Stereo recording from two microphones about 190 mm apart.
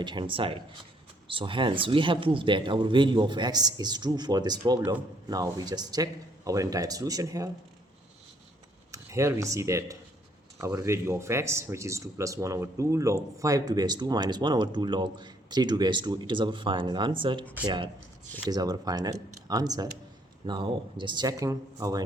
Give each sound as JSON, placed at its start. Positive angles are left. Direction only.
{"t": 0.0, "sound": "speech", "side_deg": -25}
{"t": 8.9, "sound": "speech", "side_deg": -15}
{"t": 18.4, "sound": "speech", "side_deg": -20}